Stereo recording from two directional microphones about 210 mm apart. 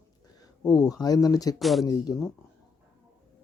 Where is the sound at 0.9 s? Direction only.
15° left (ahead or behind).